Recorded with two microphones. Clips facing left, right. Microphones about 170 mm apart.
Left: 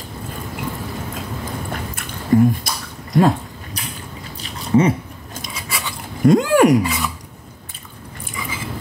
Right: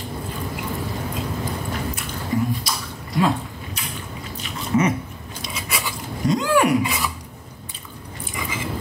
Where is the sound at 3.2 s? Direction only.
45° left (ahead or behind).